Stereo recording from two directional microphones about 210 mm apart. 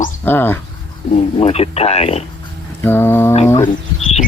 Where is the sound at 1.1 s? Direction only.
30° left (ahead or behind).